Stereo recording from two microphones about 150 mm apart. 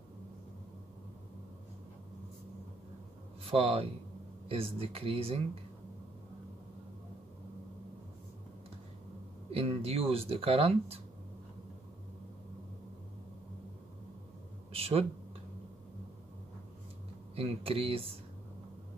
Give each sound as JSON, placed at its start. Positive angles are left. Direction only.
{"t": 3.4, "sound": "speech", "side_deg": -40}
{"t": 9.5, "sound": "speech", "side_deg": -40}
{"t": 14.7, "sound": "a sound", "side_deg": -40}
{"t": 17.4, "sound": "speech", "side_deg": -40}